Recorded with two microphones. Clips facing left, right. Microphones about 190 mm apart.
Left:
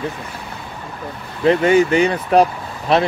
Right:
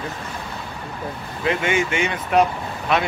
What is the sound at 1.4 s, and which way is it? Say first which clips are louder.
Speech: left 8 dB; 35° left (ahead or behind).